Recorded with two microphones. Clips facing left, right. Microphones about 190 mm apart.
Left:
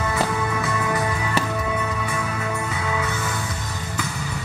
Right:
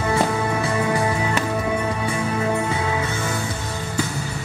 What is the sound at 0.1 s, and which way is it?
Music, 30° right (ahead or behind).